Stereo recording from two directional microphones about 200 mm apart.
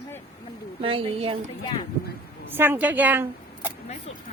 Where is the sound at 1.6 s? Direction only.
20° left (ahead or behind).